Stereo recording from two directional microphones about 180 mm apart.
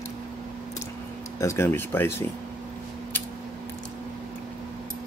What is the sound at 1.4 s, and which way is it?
Speech, 15° left (ahead or behind).